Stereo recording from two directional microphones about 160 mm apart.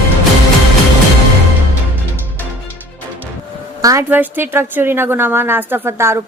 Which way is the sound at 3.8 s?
15° right (ahead or behind).